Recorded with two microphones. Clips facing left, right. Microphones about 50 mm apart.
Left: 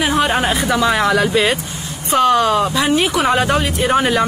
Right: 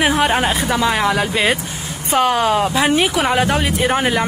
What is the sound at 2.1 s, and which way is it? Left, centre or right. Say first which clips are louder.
Speech: left 2 dB; right.